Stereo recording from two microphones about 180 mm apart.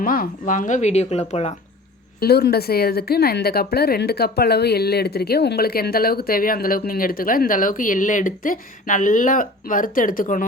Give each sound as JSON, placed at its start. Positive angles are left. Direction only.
{"t": 0.0, "sound": "speech", "side_deg": 50}
{"t": 2.2, "sound": "speech", "side_deg": 60}